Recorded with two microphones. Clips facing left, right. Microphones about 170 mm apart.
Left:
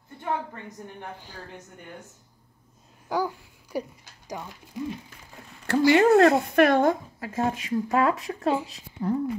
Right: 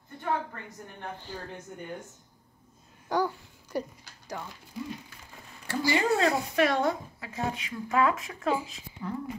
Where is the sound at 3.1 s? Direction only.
10° left (ahead or behind).